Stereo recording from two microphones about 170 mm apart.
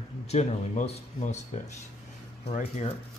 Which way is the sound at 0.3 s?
40° left (ahead or behind).